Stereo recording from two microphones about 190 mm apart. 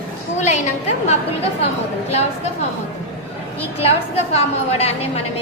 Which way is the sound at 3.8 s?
30° left (ahead or behind).